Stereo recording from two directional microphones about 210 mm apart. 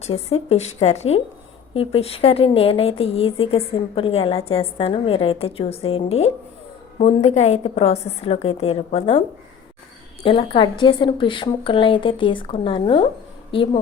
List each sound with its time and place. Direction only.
0.0 s a woman's voice: 30° left (ahead or behind)
10.2 s a woman's voice: 25° left (ahead or behind)